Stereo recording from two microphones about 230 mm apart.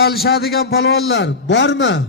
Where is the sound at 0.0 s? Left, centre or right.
Left.